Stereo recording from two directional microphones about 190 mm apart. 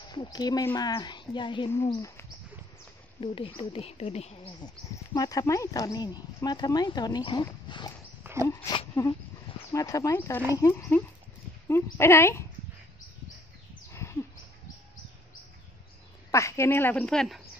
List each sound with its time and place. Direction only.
0.1 s a woman's voice: 20° left (ahead or behind)
3.2 s speech: 30° left (ahead or behind)
4.9 s speech: 20° left (ahead or behind)
8.2 s dog: 15° right (ahead or behind)
8.5 s a woman's voice: 15° left (ahead or behind)
16.3 s a woman's voice: 15° left (ahead or behind)